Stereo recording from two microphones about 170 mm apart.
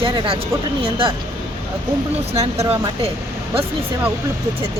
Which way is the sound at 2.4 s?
35° right (ahead or behind).